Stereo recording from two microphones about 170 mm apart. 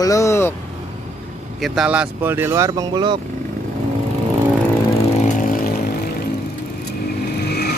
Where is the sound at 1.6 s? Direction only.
5° right (ahead or behind); by 3.2 s 25° right (ahead or behind).